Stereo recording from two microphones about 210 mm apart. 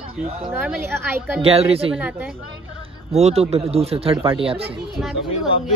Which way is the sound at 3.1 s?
30° right (ahead or behind).